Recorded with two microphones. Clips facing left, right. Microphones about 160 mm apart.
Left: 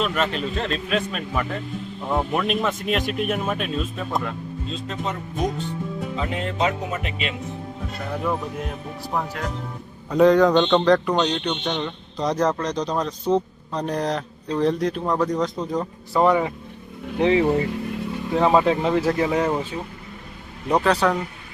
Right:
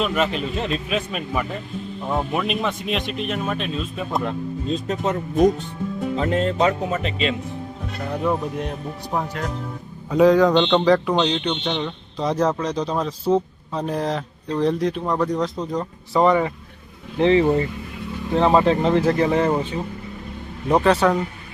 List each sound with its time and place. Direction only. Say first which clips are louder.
0.0 s a man's voice: right 2 dB; centre (ahead or behind)
4.7 s speech: right 6 dB; 45° right (ahead or behind)
6.1 s speech: right 6 dB; 40° right (ahead or behind)
8.1 s a man's voice: right 3 dB; centre (ahead or behind)
20.7 s a man's voice: right 3 dB; centre (ahead or behind)